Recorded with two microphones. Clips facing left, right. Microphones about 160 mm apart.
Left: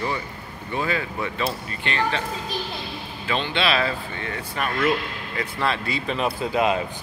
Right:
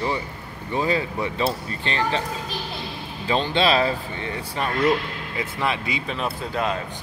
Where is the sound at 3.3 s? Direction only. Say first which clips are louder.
Right 3 dB; 40° right (ahead or behind).